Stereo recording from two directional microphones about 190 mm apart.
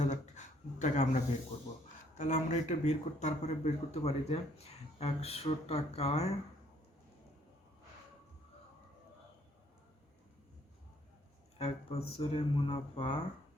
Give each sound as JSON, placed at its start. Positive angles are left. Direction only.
{"t": 0.0, "sound": "a sound", "side_deg": 40}
{"t": 2.1, "sound": "speech", "side_deg": 40}
{"t": 11.5, "sound": "speech", "side_deg": 30}